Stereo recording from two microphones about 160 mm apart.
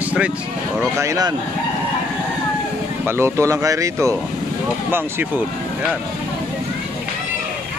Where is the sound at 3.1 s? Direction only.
15° right (ahead or behind).